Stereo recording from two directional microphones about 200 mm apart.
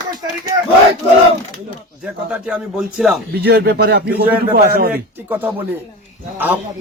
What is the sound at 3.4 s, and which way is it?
Speech, 50° right (ahead or behind).